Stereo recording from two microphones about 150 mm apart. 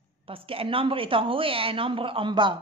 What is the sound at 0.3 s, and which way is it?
A woman's voice, 40° right (ahead or behind).